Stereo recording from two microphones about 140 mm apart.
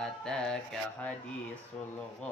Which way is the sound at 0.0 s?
5° left (ahead or behind).